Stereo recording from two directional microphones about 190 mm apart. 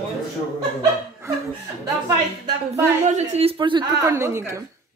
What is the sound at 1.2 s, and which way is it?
Speech, 15° right (ahead or behind).